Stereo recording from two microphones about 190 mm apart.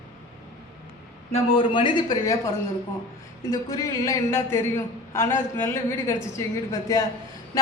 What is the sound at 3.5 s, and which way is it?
A woman's voice, 20° left (ahead or behind).